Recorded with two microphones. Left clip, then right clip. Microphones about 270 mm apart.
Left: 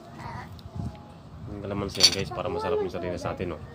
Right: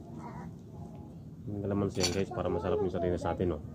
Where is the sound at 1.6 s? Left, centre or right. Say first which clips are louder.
Left 9 dB; centre.